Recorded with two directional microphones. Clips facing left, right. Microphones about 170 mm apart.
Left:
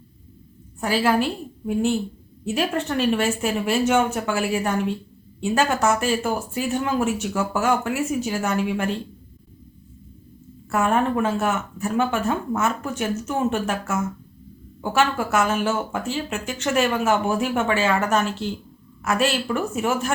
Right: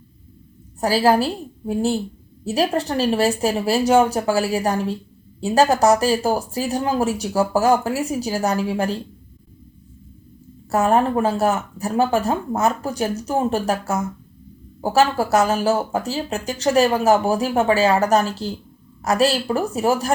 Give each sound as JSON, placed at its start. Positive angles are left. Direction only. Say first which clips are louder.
{"t": 0.8, "sound": "speech", "louder": "right 4 dB", "side_deg": -35}
{"t": 10.7, "sound": "speech", "louder": "right 3 dB", "side_deg": -35}